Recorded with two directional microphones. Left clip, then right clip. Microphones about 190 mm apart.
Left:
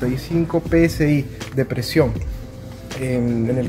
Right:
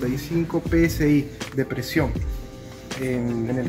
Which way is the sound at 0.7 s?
50° left (ahead or behind).